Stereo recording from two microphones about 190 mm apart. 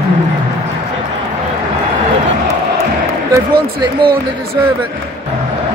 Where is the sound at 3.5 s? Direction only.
25° right (ahead or behind).